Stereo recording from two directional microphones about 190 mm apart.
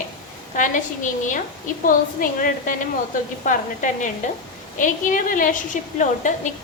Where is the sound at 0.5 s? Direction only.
40° left (ahead or behind).